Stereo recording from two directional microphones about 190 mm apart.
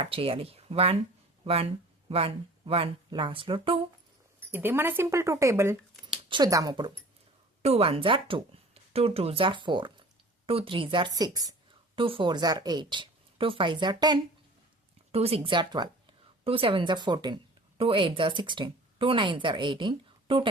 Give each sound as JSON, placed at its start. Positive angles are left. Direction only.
{"t": 0.0, "sound": "speech", "side_deg": -30}
{"t": 4.4, "sound": "a woman's voice", "side_deg": -10}
{"t": 7.6, "sound": "a woman's voice", "side_deg": -30}